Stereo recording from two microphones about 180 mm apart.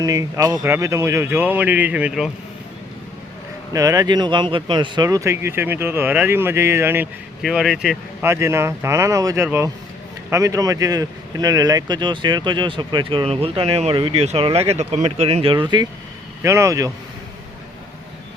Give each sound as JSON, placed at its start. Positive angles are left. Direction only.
{"t": 0.0, "sound": "speech", "side_deg": -20}
{"t": 3.7, "sound": "speech", "side_deg": -20}
{"t": 7.4, "sound": "speech", "side_deg": 0}
{"t": 8.2, "sound": "speech", "side_deg": -15}